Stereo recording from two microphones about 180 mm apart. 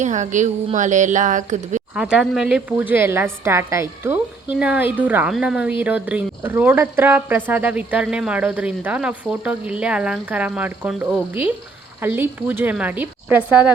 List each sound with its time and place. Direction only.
0.0 s speech: 40° right (ahead or behind)
2.0 s speech: 5° right (ahead or behind)